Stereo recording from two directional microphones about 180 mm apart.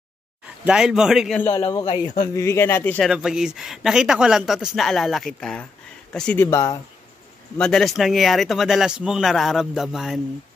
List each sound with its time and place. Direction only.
0.7 s speech: 5° right (ahead or behind)
1.4 s a man's voice: 15° left (ahead or behind)
3.1 s speech: 5° right (ahead or behind); by 6.8 s 15° left (ahead or behind)
7.5 s speech: 5° left (ahead or behind)